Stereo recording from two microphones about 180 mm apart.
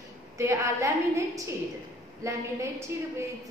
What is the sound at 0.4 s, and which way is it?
A woman's voice, 15° right (ahead or behind).